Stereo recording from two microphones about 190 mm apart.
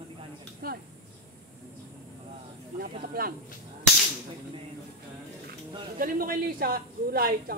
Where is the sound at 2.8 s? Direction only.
50° right (ahead or behind).